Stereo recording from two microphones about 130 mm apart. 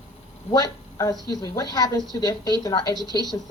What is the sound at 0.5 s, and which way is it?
A woman's voice, 25° left (ahead or behind).